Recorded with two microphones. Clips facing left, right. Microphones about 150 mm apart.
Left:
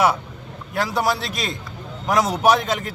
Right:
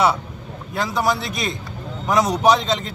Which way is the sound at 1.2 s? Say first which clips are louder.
Right 2 dB; 20° right (ahead or behind).